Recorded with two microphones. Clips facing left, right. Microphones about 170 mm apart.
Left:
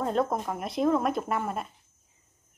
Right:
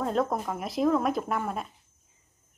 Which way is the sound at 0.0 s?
Centre (ahead or behind).